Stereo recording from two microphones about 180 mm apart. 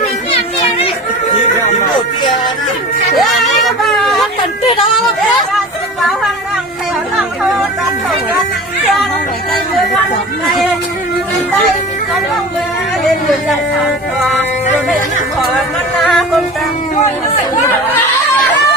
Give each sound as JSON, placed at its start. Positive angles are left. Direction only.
{"t": 0.3, "sound": "children playing", "side_deg": 30}
{"t": 3.2, "sound": "a sound", "side_deg": 0}
{"t": 15.4, "sound": "music", "side_deg": 0}